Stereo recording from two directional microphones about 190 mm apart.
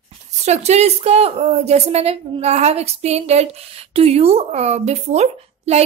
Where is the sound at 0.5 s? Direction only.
35° right (ahead or behind).